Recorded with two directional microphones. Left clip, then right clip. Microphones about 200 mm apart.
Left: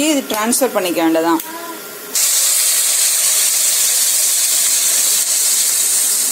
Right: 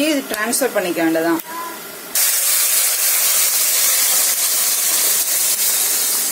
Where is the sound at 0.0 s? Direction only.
20° left (ahead or behind).